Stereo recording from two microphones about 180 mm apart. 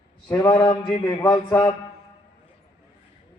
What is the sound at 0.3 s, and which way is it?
A man's voice, 25° left (ahead or behind).